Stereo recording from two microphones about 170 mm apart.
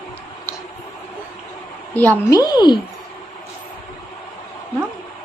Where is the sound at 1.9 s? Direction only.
10° left (ahead or behind).